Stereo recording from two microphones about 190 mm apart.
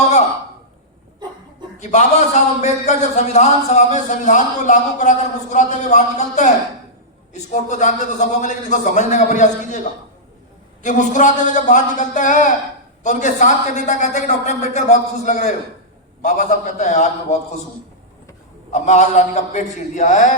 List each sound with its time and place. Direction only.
1.8 s speech: 40° left (ahead or behind)
10.8 s speech: 40° left (ahead or behind)
18.7 s speech: 40° left (ahead or behind)